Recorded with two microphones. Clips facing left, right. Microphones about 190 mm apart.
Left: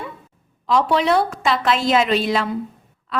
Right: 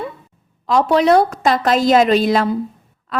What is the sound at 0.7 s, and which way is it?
A woman's voice, 45° right (ahead or behind).